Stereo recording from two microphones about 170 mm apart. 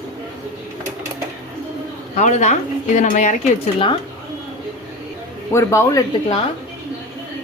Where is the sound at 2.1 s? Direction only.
45° left (ahead or behind).